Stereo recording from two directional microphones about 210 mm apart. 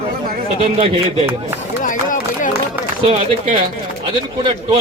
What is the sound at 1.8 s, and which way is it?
Speech, 40° left (ahead or behind).